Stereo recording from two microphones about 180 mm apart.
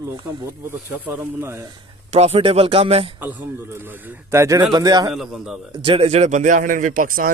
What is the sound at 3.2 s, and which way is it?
A man's voice, 10° right (ahead or behind).